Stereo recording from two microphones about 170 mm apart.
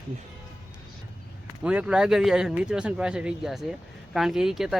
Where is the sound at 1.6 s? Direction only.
5° right (ahead or behind).